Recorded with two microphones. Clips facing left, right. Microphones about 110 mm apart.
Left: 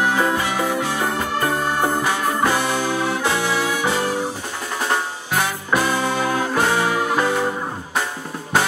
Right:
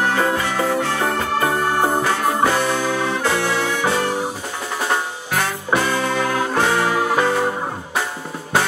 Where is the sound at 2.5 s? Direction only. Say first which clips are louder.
Right 1 dB; 15° left (ahead or behind).